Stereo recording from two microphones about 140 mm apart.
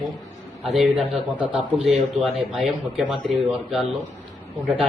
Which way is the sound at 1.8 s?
Centre (ahead or behind).